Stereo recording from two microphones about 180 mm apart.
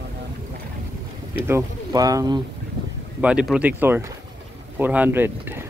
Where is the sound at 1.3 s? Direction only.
15° right (ahead or behind).